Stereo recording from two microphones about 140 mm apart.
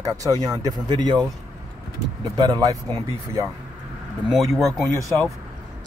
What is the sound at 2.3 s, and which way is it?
Speech, 30° right (ahead or behind).